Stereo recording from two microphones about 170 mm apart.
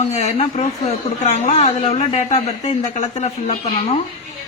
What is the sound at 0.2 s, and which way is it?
Speech, 40° left (ahead or behind).